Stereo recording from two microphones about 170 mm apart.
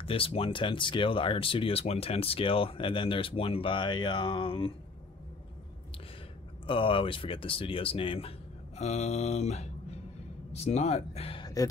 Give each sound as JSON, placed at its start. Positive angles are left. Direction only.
{"t": 0.0, "sound": "speech", "side_deg": 35}
{"t": 6.6, "sound": "speech", "side_deg": 30}
{"t": 11.4, "sound": "a sound", "side_deg": 20}